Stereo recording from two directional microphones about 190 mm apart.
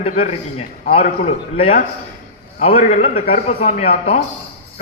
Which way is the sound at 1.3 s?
30° left (ahead or behind).